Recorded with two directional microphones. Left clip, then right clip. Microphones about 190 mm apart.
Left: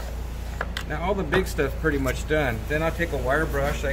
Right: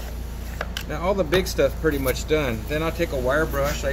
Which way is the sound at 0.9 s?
40° left (ahead or behind).